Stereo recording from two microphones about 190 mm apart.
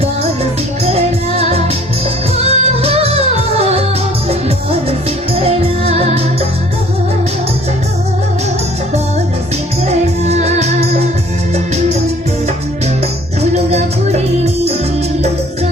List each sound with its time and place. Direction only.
0.9 s music: 30° right (ahead or behind)
9.8 s music: 35° right (ahead or behind)
13.7 s music: 35° right (ahead or behind)